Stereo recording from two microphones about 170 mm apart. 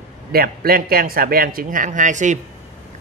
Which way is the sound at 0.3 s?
60° right (ahead or behind).